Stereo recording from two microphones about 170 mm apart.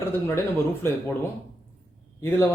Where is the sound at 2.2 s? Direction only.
15° left (ahead or behind).